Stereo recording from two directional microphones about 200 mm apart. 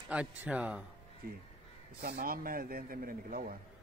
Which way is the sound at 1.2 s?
50° right (ahead or behind).